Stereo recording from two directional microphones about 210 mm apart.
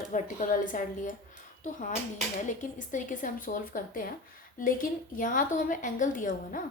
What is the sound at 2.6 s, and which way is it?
A woman's voice, 35° left (ahead or behind).